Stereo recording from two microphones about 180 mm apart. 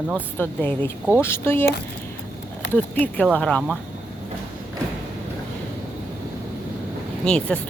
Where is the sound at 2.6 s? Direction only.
80° left.